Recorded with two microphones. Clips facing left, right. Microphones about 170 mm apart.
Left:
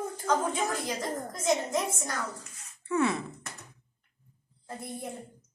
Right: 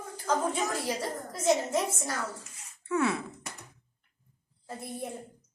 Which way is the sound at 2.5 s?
5° right (ahead or behind).